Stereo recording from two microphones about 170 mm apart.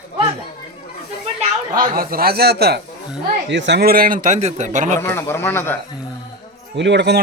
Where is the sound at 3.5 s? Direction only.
90° right; by 4.9 s 45° right (ahead or behind).